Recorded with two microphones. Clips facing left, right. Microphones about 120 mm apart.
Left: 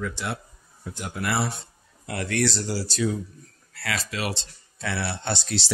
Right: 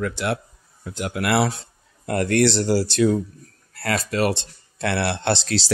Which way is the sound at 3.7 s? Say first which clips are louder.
Right 8 dB; 50° right (ahead or behind).